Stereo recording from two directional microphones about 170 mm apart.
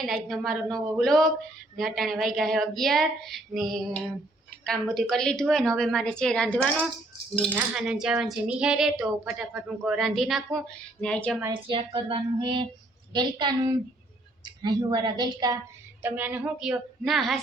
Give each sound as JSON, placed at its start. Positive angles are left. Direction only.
{"t": 0.0, "sound": "speech", "side_deg": 0}
{"t": 7.5, "sound": "speech", "side_deg": -5}
{"t": 11.5, "sound": "a woman's voice", "side_deg": -30}
{"t": 16.0, "sound": "speech", "side_deg": -10}